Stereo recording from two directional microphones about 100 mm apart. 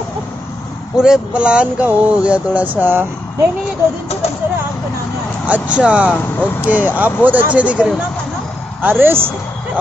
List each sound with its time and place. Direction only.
0.9 s speech: 5° right (ahead or behind)
5.5 s speech: 10° right (ahead or behind)